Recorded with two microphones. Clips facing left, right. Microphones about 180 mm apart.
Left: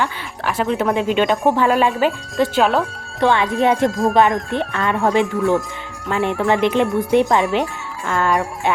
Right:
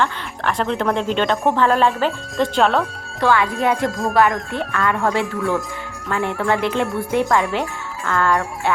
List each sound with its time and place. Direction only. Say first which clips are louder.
0.0 s speech: right 1 dB; 5° left (ahead or behind)
3.2 s speech: left 2 dB; 20° left (ahead or behind)
3.8 s music: left 4 dB; centre (ahead or behind)
4.1 s speech: left 2 dB; 20° left (ahead or behind)